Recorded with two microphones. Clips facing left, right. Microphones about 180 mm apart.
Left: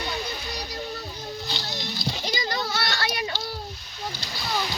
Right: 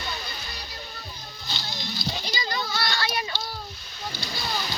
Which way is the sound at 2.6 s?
70° left (ahead or behind).